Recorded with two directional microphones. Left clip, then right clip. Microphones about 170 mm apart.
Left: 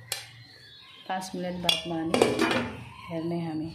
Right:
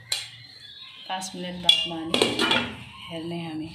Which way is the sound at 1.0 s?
50° left (ahead or behind).